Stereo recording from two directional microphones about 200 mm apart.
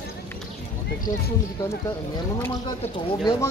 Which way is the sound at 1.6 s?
15° left (ahead or behind).